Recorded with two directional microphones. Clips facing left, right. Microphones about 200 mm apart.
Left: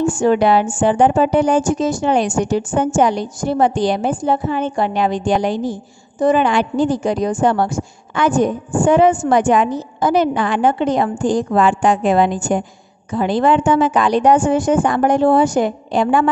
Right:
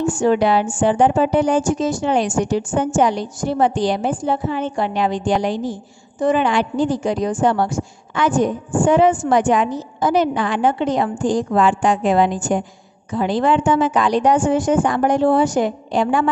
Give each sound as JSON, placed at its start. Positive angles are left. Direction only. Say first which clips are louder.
{"t": 0.2, "sound": "speech", "louder": "left 2 dB", "side_deg": 55}